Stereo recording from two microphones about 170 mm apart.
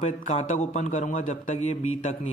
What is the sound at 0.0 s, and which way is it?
Speech, 40° left (ahead or behind).